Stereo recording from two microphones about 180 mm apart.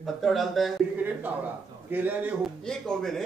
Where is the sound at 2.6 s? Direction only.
5° left (ahead or behind).